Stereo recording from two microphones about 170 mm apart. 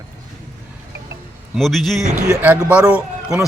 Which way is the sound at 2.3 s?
10° right (ahead or behind).